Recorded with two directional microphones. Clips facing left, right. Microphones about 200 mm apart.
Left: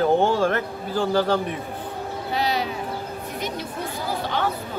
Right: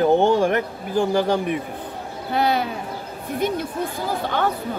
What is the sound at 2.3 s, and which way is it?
Speech, 55° right (ahead or behind).